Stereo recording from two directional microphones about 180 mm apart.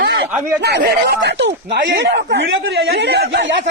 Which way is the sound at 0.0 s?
75° right (ahead or behind).